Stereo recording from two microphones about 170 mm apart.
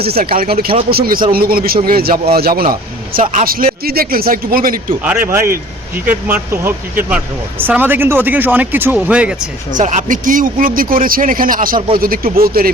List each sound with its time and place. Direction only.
0.0 s speech: 65° right (ahead or behind)
5.0 s speech: 15° right (ahead or behind)
9.7 s speech: 45° right (ahead or behind)